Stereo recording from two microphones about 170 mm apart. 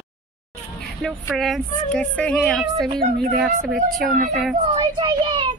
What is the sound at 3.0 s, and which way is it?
Speech, 60° right (ahead or behind).